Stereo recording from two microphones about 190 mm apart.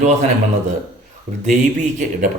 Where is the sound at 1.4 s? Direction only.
40° right (ahead or behind).